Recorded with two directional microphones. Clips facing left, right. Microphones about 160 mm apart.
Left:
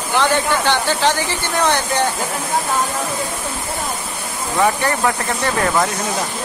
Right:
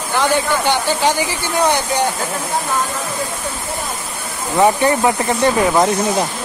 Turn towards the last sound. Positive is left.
turn(degrees=-20)  # may be behind; listen again after turning